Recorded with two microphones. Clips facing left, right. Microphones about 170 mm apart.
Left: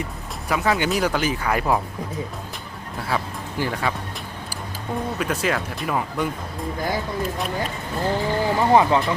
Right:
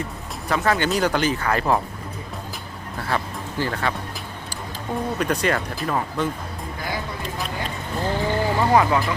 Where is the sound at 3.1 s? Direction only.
5° left (ahead or behind).